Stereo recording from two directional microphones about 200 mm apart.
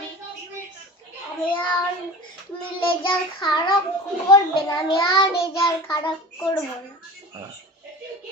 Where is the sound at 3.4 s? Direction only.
20° left (ahead or behind).